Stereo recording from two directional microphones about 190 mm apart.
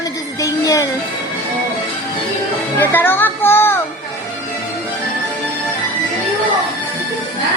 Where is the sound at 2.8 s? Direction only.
10° left (ahead or behind).